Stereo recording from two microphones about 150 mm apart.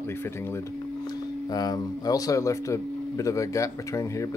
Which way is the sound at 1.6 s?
25° left (ahead or behind).